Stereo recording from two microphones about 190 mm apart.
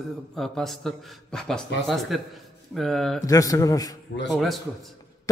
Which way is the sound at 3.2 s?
20° left (ahead or behind).